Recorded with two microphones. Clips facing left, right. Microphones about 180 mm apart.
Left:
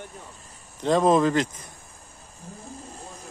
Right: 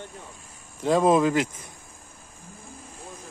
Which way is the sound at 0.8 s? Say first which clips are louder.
Even; 10° right (ahead or behind).